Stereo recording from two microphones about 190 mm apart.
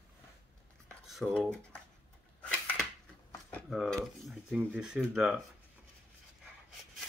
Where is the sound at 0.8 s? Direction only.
Centre (ahead or behind).